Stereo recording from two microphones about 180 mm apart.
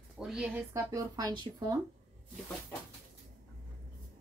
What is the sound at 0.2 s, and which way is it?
Speech, centre (ahead or behind).